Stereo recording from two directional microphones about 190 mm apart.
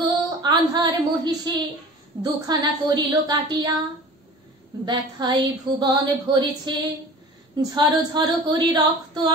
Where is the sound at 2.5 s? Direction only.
25° right (ahead or behind).